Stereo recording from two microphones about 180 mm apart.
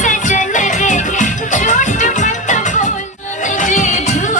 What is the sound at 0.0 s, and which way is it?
Music, 45° left (ahead or behind).